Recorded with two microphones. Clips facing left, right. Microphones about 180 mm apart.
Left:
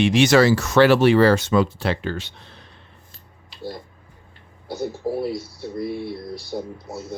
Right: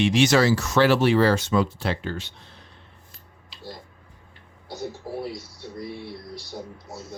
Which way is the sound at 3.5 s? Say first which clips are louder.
Left 7 dB; 60° left (ahead or behind).